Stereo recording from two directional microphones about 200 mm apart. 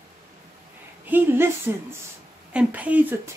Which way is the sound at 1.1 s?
10° right (ahead or behind).